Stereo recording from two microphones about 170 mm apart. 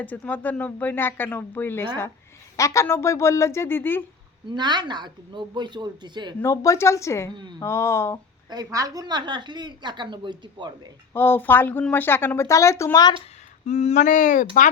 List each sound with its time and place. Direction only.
0.0 s speech: 10° left (ahead or behind)
4.5 s a woman's voice: 25° right (ahead or behind)
6.4 s speech: 20° left (ahead or behind)
7.3 s a woman's voice: 25° right (ahead or behind)
7.6 s speech: 15° left (ahead or behind)
8.4 s a woman's voice: 20° right (ahead or behind)
11.1 s speech: 15° left (ahead or behind)
13.7 s speech: 40° left (ahead or behind)